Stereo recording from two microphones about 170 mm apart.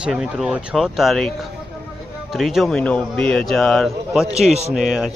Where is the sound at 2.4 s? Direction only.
Centre (ahead or behind).